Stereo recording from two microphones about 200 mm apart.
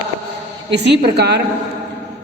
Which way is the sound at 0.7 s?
55° right (ahead or behind).